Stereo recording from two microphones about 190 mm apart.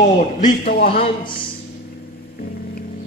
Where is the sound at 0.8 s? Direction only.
30° left (ahead or behind).